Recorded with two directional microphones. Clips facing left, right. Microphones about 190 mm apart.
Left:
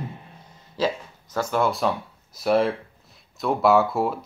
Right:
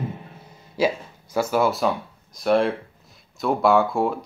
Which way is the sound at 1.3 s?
5° right (ahead or behind).